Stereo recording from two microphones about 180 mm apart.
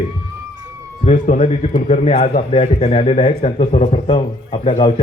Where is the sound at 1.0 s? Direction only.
40° left (ahead or behind).